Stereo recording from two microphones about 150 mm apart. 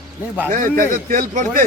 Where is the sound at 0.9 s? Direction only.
55° right (ahead or behind).